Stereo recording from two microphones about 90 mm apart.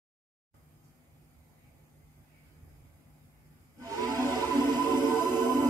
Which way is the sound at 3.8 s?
40° right (ahead or behind).